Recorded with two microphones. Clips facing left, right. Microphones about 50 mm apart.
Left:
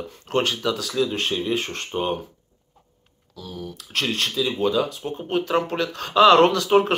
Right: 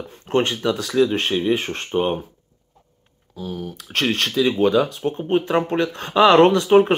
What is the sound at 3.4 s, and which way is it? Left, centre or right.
Speech, right.